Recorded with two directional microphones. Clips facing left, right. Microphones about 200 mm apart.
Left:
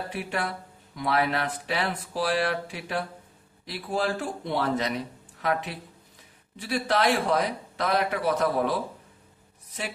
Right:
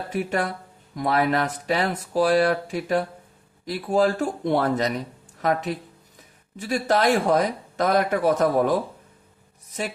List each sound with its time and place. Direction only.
0.1 s speech: 45° right (ahead or behind)